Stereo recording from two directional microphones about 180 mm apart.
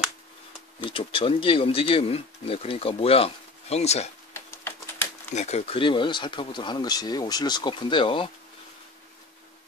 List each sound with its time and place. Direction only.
0.8 s speech: 30° left (ahead or behind)
5.3 s speech: 40° left (ahead or behind)